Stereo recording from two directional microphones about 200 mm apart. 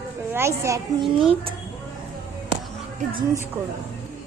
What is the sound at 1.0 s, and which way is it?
Speech, 25° right (ahead or behind).